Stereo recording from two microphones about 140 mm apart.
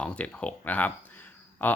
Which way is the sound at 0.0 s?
10° left (ahead or behind).